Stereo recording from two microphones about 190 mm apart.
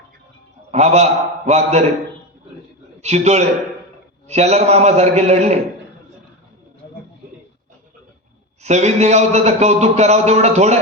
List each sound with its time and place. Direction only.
0.7 s a man's voice: 35° right (ahead or behind)
3.0 s a man's voice: 35° right (ahead or behind)
8.6 s a man's voice: 35° right (ahead or behind)